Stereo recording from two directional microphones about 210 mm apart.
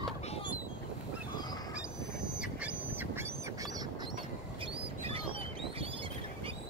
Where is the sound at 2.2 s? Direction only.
5° right (ahead or behind).